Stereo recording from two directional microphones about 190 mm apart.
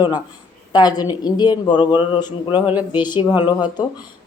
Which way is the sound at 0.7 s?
20° left (ahead or behind).